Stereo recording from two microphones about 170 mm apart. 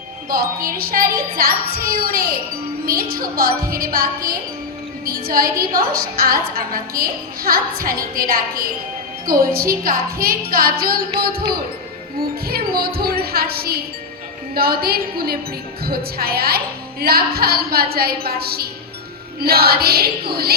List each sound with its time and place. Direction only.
0.3 s speech: 60° right (ahead or behind)